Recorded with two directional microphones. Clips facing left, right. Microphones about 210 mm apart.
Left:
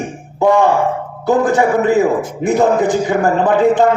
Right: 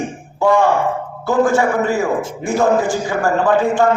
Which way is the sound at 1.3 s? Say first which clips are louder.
Left 2 dB; 20° left (ahead or behind).